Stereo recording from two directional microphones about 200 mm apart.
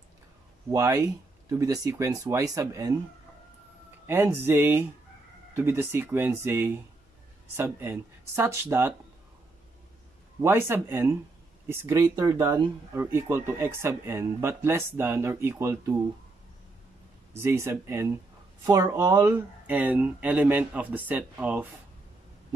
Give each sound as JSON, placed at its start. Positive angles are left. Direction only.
{"t": 0.7, "sound": "speech", "side_deg": -15}
{"t": 4.1, "sound": "speech", "side_deg": -10}
{"t": 10.4, "sound": "speech", "side_deg": -10}
{"t": 17.4, "sound": "speech", "side_deg": -15}